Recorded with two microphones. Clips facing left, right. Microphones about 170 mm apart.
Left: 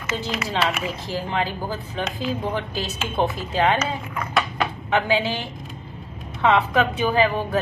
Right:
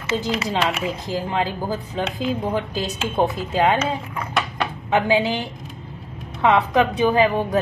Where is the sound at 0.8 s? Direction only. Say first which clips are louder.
Right 3 dB; 15° right (ahead or behind).